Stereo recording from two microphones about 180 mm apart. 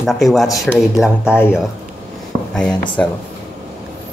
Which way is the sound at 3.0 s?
5° left (ahead or behind).